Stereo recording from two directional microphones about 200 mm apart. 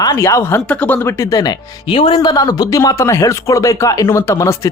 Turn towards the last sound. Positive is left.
turn(degrees=15)  # may be behind; listen again after turning